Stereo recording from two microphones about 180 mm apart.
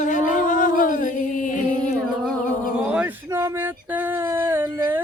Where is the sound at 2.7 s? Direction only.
5° right (ahead or behind).